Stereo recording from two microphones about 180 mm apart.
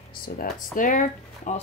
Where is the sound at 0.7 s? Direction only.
45° left (ahead or behind).